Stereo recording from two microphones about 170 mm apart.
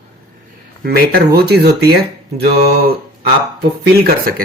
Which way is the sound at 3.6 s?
60° right (ahead or behind).